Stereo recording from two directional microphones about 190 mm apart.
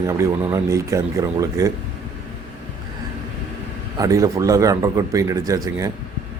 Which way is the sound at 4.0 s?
15° right (ahead or behind).